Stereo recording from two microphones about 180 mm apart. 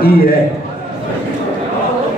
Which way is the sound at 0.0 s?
55° left (ahead or behind).